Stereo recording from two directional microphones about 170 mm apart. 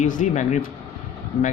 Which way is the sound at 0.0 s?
45° left (ahead or behind).